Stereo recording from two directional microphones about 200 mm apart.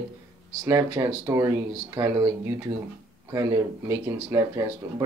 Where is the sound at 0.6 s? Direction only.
15° right (ahead or behind).